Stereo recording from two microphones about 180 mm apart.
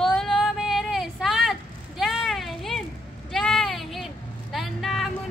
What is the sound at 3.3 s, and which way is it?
Vehicle, centre (ahead or behind).